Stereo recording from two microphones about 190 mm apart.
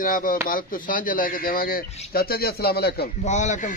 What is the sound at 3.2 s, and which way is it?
Speech, 40° left (ahead or behind).